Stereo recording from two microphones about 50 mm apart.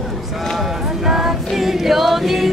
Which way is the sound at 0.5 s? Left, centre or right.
Centre.